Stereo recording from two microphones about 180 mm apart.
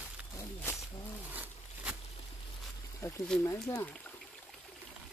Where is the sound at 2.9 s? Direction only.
15° left (ahead or behind).